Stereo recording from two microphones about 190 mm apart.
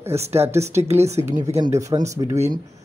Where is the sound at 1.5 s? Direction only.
15° right (ahead or behind).